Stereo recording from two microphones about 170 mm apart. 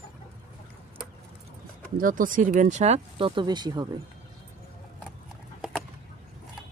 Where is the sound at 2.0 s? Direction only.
55° right (ahead or behind); by 3.8 s 25° right (ahead or behind).